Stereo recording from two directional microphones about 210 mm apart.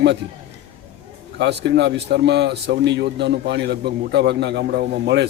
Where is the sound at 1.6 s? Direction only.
55° right (ahead or behind).